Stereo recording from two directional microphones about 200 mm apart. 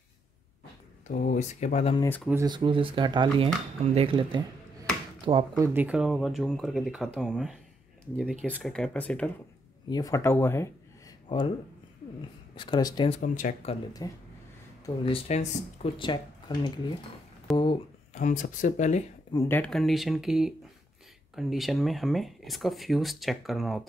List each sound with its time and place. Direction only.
1.0 s speech: 40° left (ahead or behind)
2.0 s speech: 10° left (ahead or behind)
2.4 s speech: 25° right (ahead or behind)
5.6 s speech: 10° right (ahead or behind); by 9.3 s 5° left (ahead or behind)
9.8 s speech: 20° left (ahead or behind)
11.2 s speech: 25° left (ahead or behind)
12.5 s speech: 20° left (ahead or behind)
13.2 s speech: 40° left (ahead or behind)
14.0 s speech: 15° left (ahead or behind)
15.0 s speech: 30° left (ahead or behind)
17.5 s speech: centre (ahead or behind)
18.1 s speech: 40° left (ahead or behind)
19.3 s speech: 10° left (ahead or behind)